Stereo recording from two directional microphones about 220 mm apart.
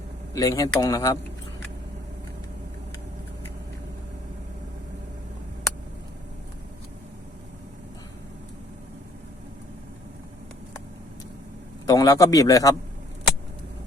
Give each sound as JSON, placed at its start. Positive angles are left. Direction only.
{"t": 0.3, "sound": "a man's voice", "side_deg": 15}
{"t": 11.9, "sound": "a man's voice", "side_deg": 15}